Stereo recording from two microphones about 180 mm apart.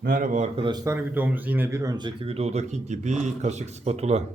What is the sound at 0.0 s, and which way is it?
A man's voice, 50° right (ahead or behind).